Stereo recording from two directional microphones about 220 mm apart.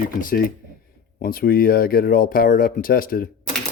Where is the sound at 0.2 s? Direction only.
40° left (ahead or behind).